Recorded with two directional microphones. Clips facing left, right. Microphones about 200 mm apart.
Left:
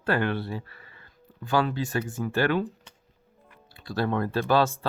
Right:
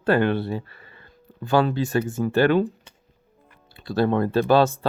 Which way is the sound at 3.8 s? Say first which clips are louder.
Right 6 dB; 25° right (ahead or behind).